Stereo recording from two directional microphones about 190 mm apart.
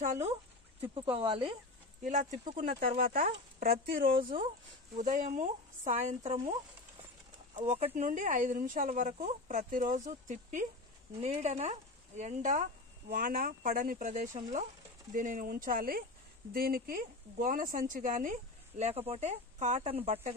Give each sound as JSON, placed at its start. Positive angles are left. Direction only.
{"t": 0.0, "sound": "a sound", "side_deg": -40}
{"t": 1.1, "sound": "speech", "side_deg": -30}
{"t": 2.5, "sound": "speech", "side_deg": -45}
{"t": 7.5, "sound": "speech", "side_deg": -35}